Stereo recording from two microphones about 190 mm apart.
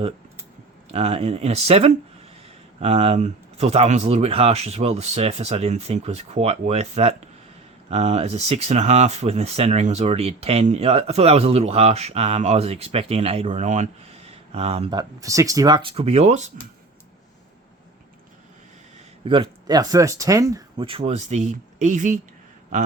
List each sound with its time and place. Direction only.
0.9 s speech: 35° right (ahead or behind)
19.2 s speech: 25° right (ahead or behind)